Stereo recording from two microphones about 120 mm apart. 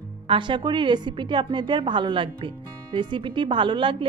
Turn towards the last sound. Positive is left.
turn(degrees=-45)  # may be behind; listen again after turning